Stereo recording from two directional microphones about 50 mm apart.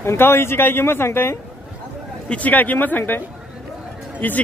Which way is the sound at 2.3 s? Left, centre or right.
Left.